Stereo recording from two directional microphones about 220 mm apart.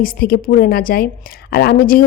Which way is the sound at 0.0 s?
40° left (ahead or behind).